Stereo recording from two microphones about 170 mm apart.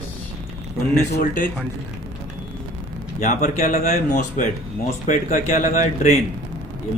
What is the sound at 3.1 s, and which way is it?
Speech, 50° left (ahead or behind).